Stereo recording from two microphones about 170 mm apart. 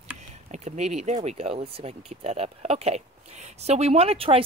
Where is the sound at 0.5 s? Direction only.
40° right (ahead or behind).